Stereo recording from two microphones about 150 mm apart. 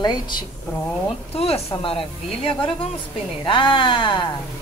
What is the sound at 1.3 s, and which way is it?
Speech, 40° left (ahead or behind).